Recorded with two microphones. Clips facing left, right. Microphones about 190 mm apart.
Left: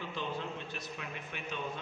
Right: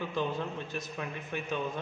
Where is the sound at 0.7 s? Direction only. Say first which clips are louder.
Right 5 dB; 45° right (ahead or behind).